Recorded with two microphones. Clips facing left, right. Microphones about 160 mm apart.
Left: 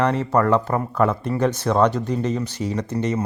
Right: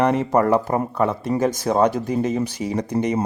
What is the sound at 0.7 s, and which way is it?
Speech, 25° right (ahead or behind).